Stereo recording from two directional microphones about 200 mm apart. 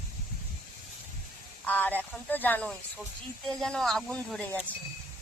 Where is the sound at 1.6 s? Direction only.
10° left (ahead or behind).